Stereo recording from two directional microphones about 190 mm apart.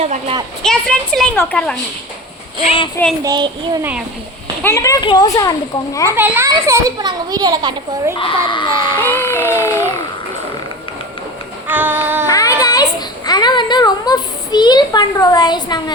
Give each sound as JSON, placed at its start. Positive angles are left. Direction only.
{"t": 0.0, "sound": "speech", "side_deg": -30}
{"t": 0.6, "sound": "a woman's voice", "side_deg": 5}
{"t": 2.6, "sound": "a child's voice", "side_deg": 30}
{"t": 3.2, "sound": "a child's voice", "side_deg": -25}
{"t": 4.6, "sound": "a child's voice", "side_deg": 15}
{"t": 6.1, "sound": "a child's voice", "side_deg": -10}
{"t": 8.2, "sound": "speech", "side_deg": 25}
{"t": 9.0, "sound": "speech", "side_deg": 10}
{"t": 11.7, "sound": "child singing", "side_deg": -10}
{"t": 12.3, "sound": "a sound", "side_deg": 20}
{"t": 12.6, "sound": "a child's voice", "side_deg": 20}